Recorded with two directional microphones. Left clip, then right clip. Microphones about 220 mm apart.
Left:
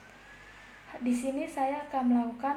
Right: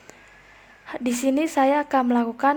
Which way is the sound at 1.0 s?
50° right (ahead or behind).